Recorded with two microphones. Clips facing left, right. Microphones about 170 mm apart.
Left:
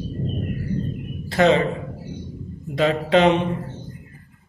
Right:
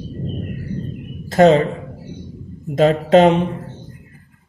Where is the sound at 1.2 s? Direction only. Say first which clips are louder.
Right 5 dB; 45° right (ahead or behind).